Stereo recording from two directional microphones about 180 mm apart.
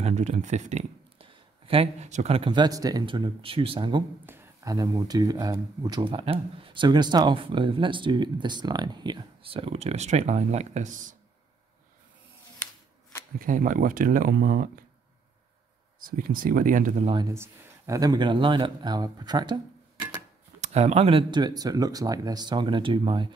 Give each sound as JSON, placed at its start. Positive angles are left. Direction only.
{"t": 0.0, "sound": "speech", "side_deg": -40}
{"t": 13.4, "sound": "speech", "side_deg": -50}
{"t": 16.0, "sound": "speech", "side_deg": -50}
{"t": 17.3, "sound": "speech", "side_deg": -15}
{"t": 20.6, "sound": "speech", "side_deg": -35}